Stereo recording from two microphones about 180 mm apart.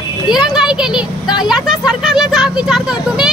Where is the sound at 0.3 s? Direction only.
Centre (ahead or behind).